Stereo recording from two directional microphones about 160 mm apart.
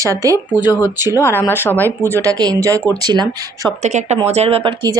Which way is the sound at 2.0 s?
20° right (ahead or behind).